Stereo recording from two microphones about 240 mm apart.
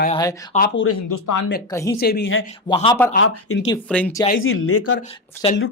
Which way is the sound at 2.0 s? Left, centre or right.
Left.